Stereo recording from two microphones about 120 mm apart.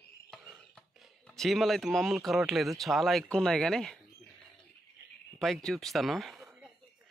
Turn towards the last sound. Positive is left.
turn(degrees=0)  # may be behind; listen again after turning